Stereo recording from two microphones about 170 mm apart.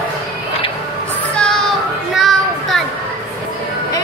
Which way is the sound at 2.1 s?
Centre (ahead or behind).